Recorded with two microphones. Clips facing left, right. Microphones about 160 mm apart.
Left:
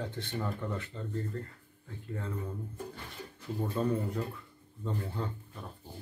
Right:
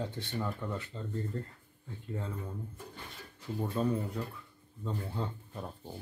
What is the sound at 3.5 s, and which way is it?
Speech, centre (ahead or behind).